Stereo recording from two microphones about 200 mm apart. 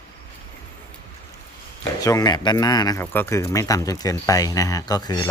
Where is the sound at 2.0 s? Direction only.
20° left (ahead or behind).